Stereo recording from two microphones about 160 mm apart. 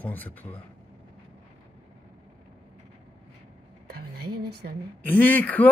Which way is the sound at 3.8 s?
80° right.